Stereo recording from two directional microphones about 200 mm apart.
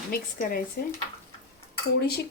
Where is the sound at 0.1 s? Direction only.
45° left (ahead or behind).